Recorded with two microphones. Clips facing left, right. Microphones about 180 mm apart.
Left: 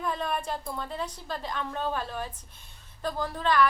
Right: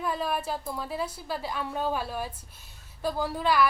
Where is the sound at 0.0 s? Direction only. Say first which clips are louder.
Right 1 dB; 5° right (ahead or behind).